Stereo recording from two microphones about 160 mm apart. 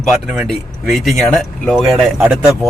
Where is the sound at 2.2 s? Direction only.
10° right (ahead or behind).